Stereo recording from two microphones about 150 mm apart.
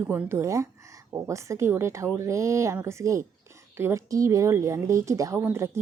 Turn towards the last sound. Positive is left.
turn(degrees=-15)  # may be behind; listen again after turning